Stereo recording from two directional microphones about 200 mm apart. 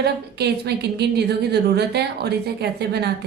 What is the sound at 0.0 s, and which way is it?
A woman's voice, 55° right (ahead or behind).